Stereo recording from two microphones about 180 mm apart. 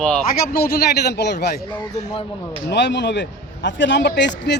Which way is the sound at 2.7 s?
70° left (ahead or behind).